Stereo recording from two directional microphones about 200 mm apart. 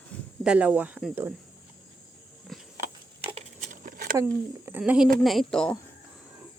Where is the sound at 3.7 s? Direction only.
45° right (ahead or behind).